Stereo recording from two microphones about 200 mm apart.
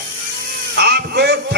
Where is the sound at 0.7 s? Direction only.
55° right (ahead or behind).